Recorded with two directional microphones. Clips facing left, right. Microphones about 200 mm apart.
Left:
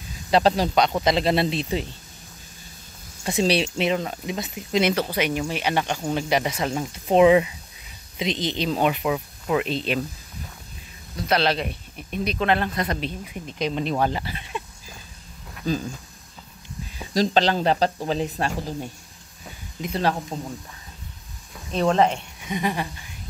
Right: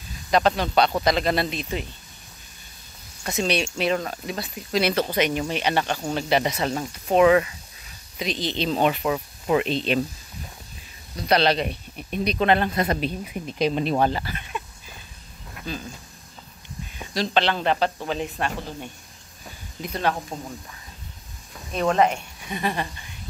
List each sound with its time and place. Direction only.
0.3 s speech: 30° left (ahead or behind)
0.7 s speech: 15° left (ahead or behind)
3.3 s speech: 30° left (ahead or behind)
3.7 s speech: 15° left (ahead or behind)
6.9 s speech: 25° left (ahead or behind)
8.6 s speech: 10° left (ahead or behind)
11.1 s speech: 5° left (ahead or behind)
14.2 s speech: 25° left (ahead or behind)
15.7 s speech: 40° left (ahead or behind)
17.1 s speech: 40° left (ahead or behind)
22.5 s speech: 15° left (ahead or behind)